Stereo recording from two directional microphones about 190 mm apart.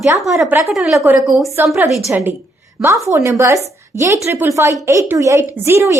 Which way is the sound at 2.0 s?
10° right (ahead or behind).